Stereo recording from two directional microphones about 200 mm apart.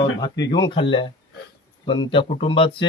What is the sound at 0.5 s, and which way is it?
Speech, 25° left (ahead or behind).